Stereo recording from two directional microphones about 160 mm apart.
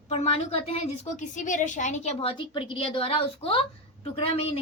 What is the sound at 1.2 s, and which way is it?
A woman's voice, 50° left (ahead or behind).